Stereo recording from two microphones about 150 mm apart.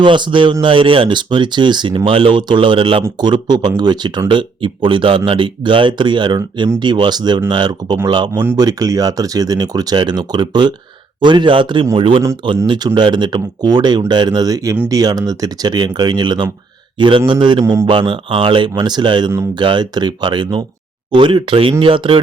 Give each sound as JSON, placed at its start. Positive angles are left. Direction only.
{"t": 0.0, "sound": "speech", "side_deg": -35}